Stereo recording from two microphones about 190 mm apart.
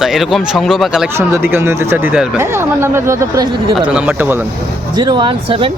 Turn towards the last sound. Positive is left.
turn(degrees=-30)  # may be behind; listen again after turning